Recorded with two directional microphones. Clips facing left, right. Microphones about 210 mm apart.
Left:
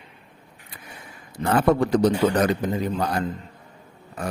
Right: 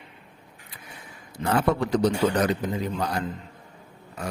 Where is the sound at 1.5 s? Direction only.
50° left (ahead or behind).